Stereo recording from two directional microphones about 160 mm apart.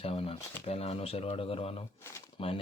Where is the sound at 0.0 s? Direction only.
35° left (ahead or behind).